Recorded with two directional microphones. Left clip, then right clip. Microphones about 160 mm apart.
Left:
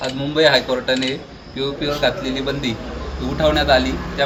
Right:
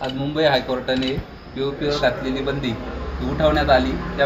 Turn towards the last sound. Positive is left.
turn(degrees=20)  # may be behind; listen again after turning